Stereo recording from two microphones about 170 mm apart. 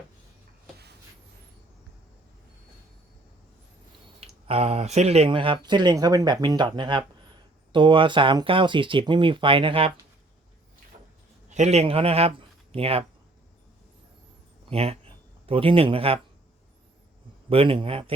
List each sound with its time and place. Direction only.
4.2 s speech: 35° right (ahead or behind)
11.4 s a man's voice: 45° right (ahead or behind)
14.7 s speech: 35° right (ahead or behind)
17.5 s speech: 35° right (ahead or behind)